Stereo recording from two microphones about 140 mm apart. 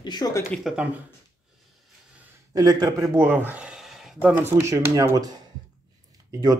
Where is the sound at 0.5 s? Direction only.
5° right (ahead or behind).